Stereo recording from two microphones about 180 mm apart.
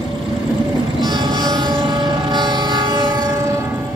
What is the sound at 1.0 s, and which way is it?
Train, 25° right (ahead or behind).